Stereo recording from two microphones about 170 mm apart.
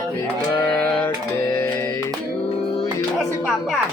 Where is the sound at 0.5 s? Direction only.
10° left (ahead or behind).